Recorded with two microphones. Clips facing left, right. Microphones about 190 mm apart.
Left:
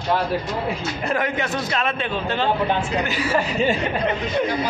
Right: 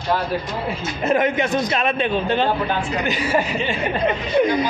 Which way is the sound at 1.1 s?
20° right (ahead or behind).